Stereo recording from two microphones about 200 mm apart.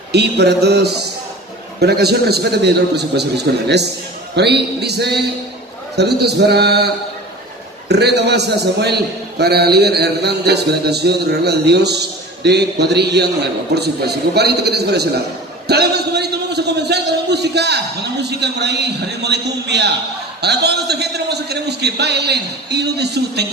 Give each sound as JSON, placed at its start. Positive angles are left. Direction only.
{"t": 0.1, "sound": "a man's voice", "side_deg": -55}
{"t": 7.9, "sound": "a man's voice", "side_deg": -55}